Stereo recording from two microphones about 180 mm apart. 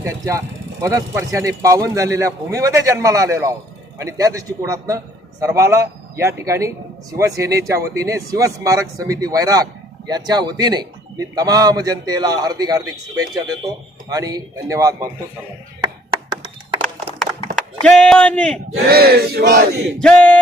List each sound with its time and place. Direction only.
0.0 s a man's voice: 15° right (ahead or behind)
17.8 s a man's voice: 5° left (ahead or behind)
18.9 s a sound: 60° right (ahead or behind)
20.0 s a man's voice: 5° left (ahead or behind)